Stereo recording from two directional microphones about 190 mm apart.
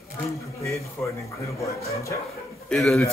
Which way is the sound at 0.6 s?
15° left (ahead or behind).